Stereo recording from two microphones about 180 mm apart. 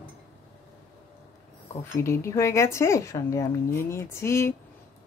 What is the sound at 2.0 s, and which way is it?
Speech, 15° left (ahead or behind).